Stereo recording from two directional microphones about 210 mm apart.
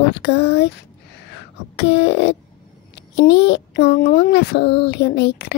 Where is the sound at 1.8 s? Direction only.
55° left (ahead or behind).